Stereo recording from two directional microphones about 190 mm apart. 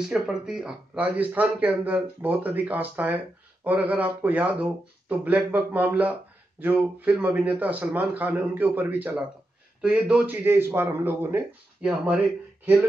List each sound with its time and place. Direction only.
0.1 s speech: 5° right (ahead or behind)